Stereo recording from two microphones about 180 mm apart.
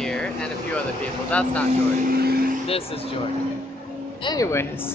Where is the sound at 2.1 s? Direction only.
55° right (ahead or behind).